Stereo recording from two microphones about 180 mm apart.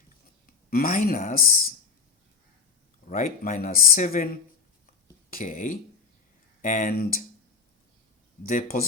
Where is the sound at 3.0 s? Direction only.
50° left (ahead or behind).